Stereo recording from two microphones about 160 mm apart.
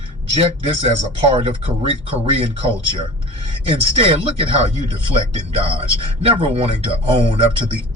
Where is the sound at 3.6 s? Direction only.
35° right (ahead or behind).